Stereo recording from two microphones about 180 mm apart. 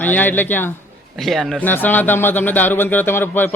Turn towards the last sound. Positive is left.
turn(degrees=10)  # may be behind; listen again after turning